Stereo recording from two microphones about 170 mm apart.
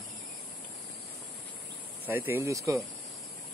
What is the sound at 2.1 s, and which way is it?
Speech, 15° right (ahead or behind).